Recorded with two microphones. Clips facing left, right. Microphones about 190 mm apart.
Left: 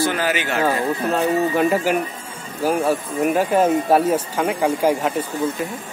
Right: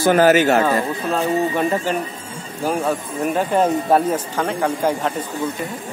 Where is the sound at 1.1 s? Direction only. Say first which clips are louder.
Right 1 dB; 10° left (ahead or behind).